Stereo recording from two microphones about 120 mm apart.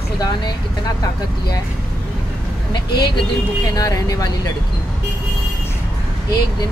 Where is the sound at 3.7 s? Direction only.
30° left (ahead or behind).